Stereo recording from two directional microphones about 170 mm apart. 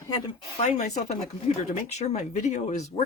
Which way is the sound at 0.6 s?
45° left (ahead or behind).